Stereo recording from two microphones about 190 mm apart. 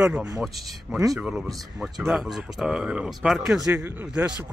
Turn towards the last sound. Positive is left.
turn(degrees=-10)  # may be behind; listen again after turning